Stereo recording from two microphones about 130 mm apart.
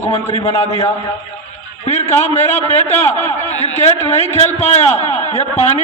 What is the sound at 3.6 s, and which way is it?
A man's voice, 55° left (ahead or behind).